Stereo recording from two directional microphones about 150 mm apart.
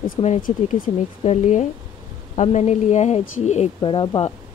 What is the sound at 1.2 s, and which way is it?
Speech, 50° left (ahead or behind).